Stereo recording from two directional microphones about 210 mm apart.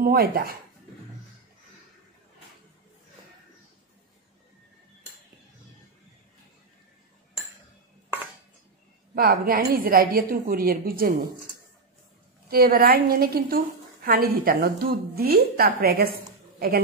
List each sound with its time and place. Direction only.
0.0 s a woman's voice: 45° right (ahead or behind)
9.1 s a woman's voice: 45° right (ahead or behind)
12.4 s a woman's voice: 45° right (ahead or behind)